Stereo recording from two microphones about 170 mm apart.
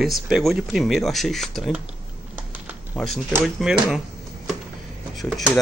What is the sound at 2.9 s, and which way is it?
Speech, centre (ahead or behind).